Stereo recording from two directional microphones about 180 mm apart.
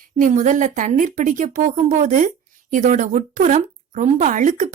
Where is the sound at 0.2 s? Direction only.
45° right (ahead or behind).